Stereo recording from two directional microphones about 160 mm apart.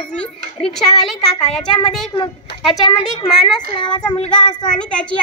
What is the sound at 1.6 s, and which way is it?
Speech, 25° left (ahead or behind).